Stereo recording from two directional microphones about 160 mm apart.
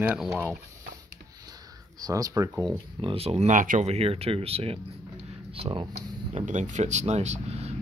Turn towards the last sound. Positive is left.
turn(degrees=-40)  # may be behind; listen again after turning